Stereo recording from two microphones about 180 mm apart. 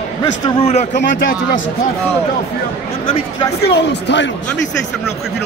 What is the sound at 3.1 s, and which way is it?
Speech, 30° left (ahead or behind).